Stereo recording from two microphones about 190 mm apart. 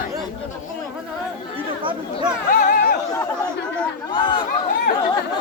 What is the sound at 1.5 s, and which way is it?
Chatter, 25° right (ahead or behind).